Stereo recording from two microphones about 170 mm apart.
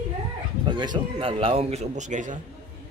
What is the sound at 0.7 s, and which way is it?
A man's voice, 25° right (ahead or behind).